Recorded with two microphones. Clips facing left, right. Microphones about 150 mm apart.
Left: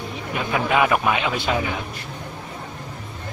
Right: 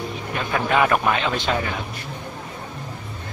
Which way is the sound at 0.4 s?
10° left (ahead or behind).